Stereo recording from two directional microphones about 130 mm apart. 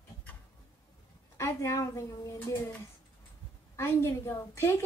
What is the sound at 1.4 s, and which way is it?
A child's voice, 25° left (ahead or behind).